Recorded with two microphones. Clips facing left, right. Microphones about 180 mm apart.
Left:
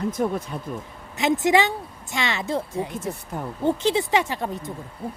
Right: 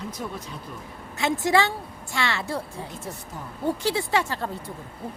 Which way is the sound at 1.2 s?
20° left (ahead or behind).